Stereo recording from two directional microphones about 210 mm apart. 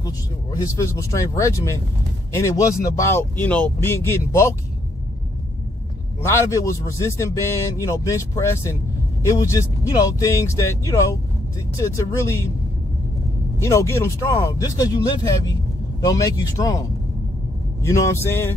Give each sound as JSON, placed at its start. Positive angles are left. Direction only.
{"t": 0.6, "sound": "a man's voice", "side_deg": 15}
{"t": 6.2, "sound": "a man's voice", "side_deg": 15}
{"t": 13.6, "sound": "a man's voice", "side_deg": 15}
{"t": 17.8, "sound": "a man's voice", "side_deg": 15}